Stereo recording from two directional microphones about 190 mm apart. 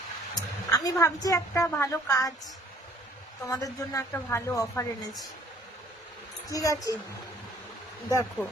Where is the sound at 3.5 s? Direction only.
15° left (ahead or behind).